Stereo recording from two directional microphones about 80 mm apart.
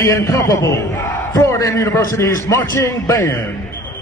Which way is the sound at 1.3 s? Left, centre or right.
Left.